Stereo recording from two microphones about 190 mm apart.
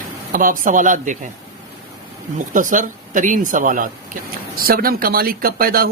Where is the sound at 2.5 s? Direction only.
45° right (ahead or behind).